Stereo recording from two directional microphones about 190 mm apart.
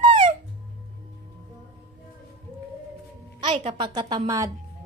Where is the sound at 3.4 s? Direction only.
30° right (ahead or behind).